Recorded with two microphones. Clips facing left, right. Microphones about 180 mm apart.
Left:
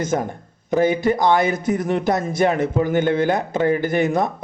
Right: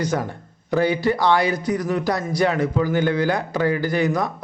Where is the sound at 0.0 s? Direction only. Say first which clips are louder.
Left 2 dB; 20° left (ahead or behind).